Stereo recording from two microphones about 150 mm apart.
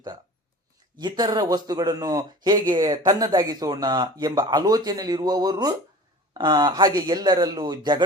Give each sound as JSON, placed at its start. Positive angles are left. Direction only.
{"t": 0.9, "sound": "speech", "side_deg": -30}